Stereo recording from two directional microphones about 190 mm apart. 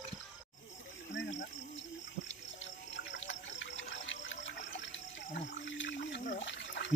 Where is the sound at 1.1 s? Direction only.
70° left (ahead or behind).